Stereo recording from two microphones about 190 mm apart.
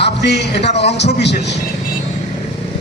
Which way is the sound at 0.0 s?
65° left (ahead or behind).